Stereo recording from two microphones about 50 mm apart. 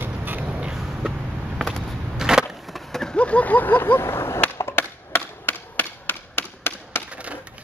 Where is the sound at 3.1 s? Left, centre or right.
Left.